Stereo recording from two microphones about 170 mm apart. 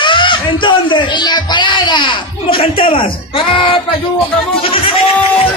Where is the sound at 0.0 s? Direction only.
30° left (ahead or behind).